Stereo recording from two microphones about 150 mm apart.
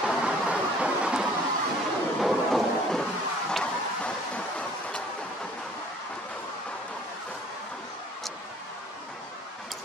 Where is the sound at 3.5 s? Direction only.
5° left (ahead or behind).